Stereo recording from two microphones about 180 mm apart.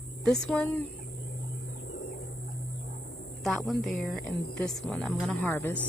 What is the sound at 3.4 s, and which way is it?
A woman's voice, centre (ahead or behind).